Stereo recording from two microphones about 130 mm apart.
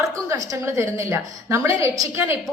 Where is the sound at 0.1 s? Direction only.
25° right (ahead or behind).